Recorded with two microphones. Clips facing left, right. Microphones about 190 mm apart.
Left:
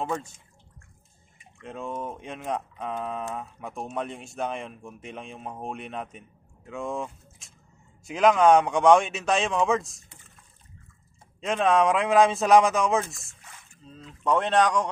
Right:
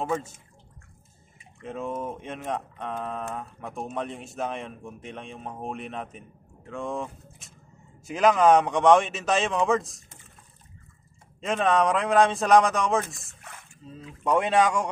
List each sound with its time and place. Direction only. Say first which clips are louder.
0.0 s speech: right 2 dB; 5° right (ahead or behind)
1.6 s speech: right 2 dB; 5° right (ahead or behind)
11.4 s speech: left 1 dB; centre (ahead or behind)
13.4 s a sound: right 5 dB; 60° right (ahead or behind)
13.8 s speech: even; 10° right (ahead or behind)